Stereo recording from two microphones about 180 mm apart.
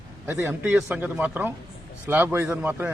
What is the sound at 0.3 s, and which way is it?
Speech, 10° right (ahead or behind).